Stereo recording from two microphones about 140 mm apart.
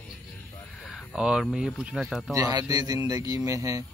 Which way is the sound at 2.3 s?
25° right (ahead or behind).